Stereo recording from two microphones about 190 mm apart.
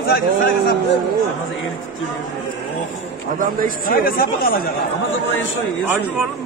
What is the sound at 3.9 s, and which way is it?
Speech, 50° left (ahead or behind).